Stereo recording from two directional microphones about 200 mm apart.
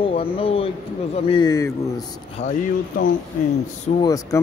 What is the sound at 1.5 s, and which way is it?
Speech, 15° left (ahead or behind).